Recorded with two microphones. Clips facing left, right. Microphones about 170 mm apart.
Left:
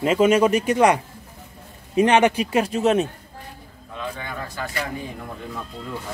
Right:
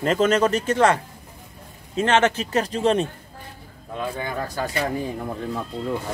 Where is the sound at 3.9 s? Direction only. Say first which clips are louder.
Right 4 dB; 35° right (ahead or behind).